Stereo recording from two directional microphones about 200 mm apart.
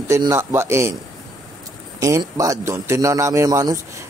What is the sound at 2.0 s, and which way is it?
A man's voice, 15° right (ahead or behind).